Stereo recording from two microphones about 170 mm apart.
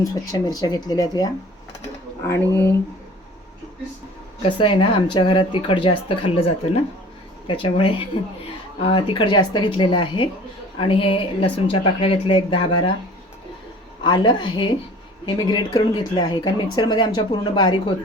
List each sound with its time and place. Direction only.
0.0 s speech: 20° left (ahead or behind)
4.4 s a woman's voice: 30° left (ahead or behind)
14.0 s speech: 25° left (ahead or behind)